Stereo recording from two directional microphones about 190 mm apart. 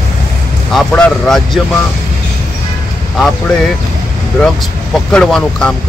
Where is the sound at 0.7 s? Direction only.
5° left (ahead or behind).